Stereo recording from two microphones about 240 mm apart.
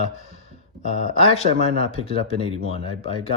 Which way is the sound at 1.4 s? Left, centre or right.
Right.